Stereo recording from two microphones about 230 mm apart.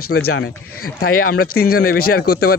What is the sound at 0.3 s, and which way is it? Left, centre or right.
Speech, left.